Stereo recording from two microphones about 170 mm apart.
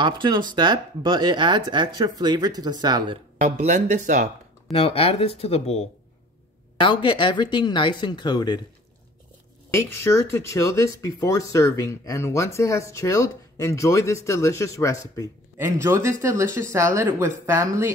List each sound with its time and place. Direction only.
0.0 s speech: 25° right (ahead or behind)
3.3 s speech: 45° right (ahead or behind)
4.7 s speech: 35° left (ahead or behind)
9.7 s speech: 15° left (ahead or behind)
15.5 s speech: 15° right (ahead or behind)